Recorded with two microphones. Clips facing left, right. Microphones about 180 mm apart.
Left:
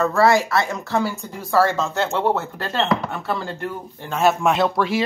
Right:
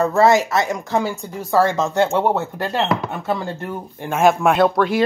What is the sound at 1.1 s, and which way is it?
Speech, 35° right (ahead or behind).